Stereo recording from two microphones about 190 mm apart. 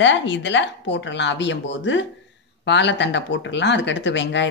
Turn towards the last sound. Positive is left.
turn(degrees=70)  # may be behind; listen again after turning